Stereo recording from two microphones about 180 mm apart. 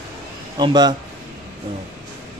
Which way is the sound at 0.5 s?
25° right (ahead or behind).